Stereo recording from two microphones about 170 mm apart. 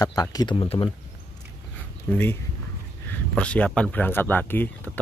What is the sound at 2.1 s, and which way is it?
Speech, 10° left (ahead or behind).